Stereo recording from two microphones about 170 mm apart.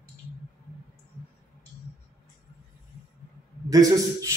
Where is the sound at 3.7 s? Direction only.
20° right (ahead or behind).